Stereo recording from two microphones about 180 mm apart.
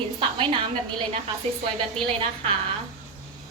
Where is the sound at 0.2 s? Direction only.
30° right (ahead or behind).